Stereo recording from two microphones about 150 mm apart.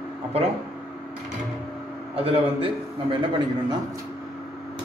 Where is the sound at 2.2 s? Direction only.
35° right (ahead or behind).